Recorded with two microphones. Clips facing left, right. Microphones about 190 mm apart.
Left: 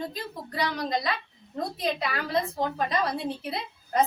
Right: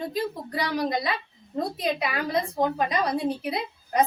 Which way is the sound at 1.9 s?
20° right (ahead or behind).